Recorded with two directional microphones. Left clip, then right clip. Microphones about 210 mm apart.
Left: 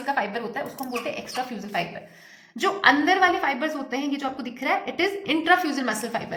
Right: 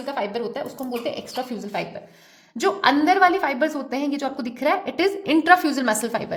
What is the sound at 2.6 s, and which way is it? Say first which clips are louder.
A woman's voice: right 1 dB; 65° right (ahead or behind).